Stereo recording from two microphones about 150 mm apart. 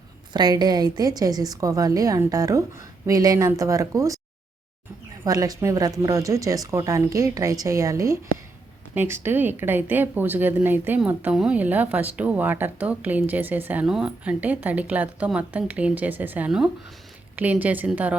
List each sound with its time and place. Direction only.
0.3 s a woman's voice: 30° right (ahead or behind)
5.2 s a woman's voice: 25° right (ahead or behind); by 18.2 s 10° right (ahead or behind)